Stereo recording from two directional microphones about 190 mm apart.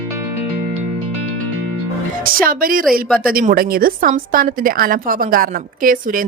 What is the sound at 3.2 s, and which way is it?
A woman's voice, 50° right (ahead or behind).